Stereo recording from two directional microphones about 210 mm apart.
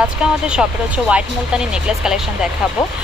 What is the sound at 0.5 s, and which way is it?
Speech, 5° right (ahead or behind).